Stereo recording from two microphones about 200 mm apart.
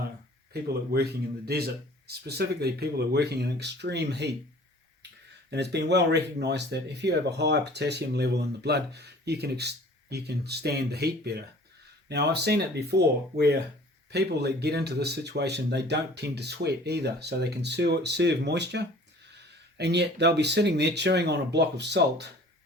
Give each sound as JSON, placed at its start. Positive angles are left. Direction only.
{"t": 1.5, "sound": "speech", "side_deg": -50}
{"t": 5.5, "sound": "speech", "side_deg": -55}